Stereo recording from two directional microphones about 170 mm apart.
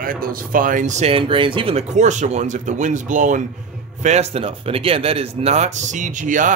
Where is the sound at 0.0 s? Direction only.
55° right (ahead or behind).